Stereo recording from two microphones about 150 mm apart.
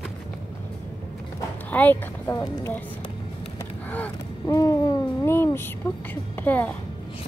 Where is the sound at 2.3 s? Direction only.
20° left (ahead or behind).